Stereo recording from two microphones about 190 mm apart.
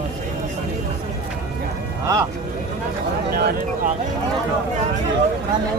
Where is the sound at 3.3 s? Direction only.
55° right (ahead or behind).